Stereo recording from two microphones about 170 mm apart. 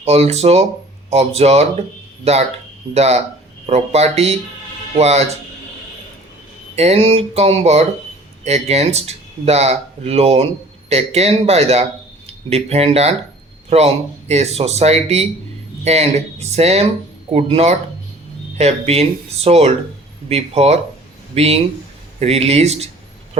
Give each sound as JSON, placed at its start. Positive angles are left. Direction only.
{"t": 0.0, "sound": "speech", "side_deg": -40}
{"t": 6.7, "sound": "speech", "side_deg": -35}